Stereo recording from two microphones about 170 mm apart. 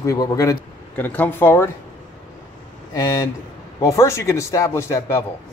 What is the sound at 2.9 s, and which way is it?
A man's voice, 20° left (ahead or behind).